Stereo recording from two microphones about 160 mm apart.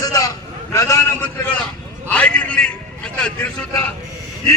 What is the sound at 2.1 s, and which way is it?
A man's voice, 10° left (ahead or behind).